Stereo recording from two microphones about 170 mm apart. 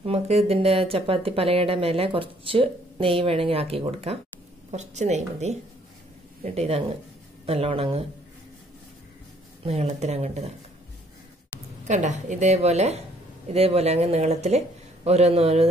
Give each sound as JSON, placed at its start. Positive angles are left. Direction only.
{"t": 0.0, "sound": "speech", "side_deg": -35}
{"t": 9.7, "sound": "speech", "side_deg": -40}
{"t": 11.9, "sound": "a woman's voice", "side_deg": -45}